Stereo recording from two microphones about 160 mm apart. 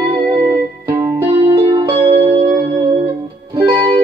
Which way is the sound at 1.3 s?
35° right (ahead or behind).